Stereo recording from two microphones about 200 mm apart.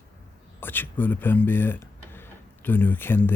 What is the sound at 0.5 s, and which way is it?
Speech, 10° left (ahead or behind).